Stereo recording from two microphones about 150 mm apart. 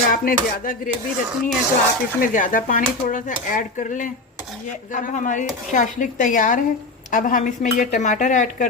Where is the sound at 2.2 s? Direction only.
65° left (ahead or behind).